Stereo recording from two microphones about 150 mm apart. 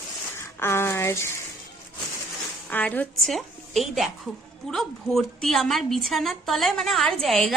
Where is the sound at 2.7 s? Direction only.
10° left (ahead or behind).